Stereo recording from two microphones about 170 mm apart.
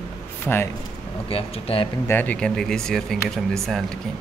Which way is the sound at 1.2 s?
35° left (ahead or behind).